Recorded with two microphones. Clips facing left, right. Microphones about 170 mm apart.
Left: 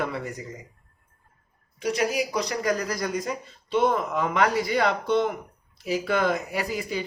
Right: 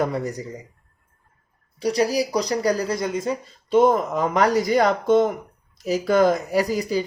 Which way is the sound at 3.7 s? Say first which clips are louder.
Right 6 dB; 40° right (ahead or behind).